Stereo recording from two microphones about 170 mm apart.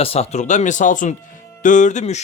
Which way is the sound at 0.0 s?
35° left (ahead or behind).